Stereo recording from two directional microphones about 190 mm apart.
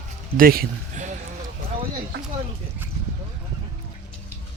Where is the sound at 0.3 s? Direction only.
50° right (ahead or behind).